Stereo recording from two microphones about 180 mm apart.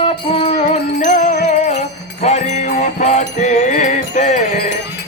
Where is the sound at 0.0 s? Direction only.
30° left (ahead or behind).